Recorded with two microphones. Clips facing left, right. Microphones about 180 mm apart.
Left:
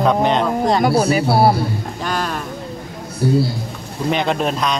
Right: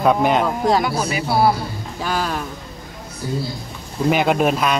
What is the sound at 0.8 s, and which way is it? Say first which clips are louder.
Speech: left 7 dB; 40° left (ahead or behind).